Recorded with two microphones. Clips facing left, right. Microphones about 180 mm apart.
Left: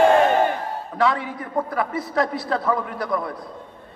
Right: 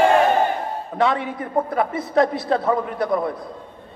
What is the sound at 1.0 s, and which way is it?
A man's voice, 25° right (ahead or behind).